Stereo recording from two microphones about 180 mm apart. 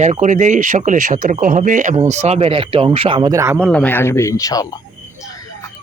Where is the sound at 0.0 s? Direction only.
40° right (ahead or behind); by 3.7 s 15° right (ahead or behind).